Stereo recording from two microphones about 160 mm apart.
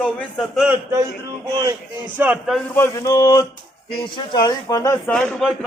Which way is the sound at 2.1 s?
10° right (ahead or behind).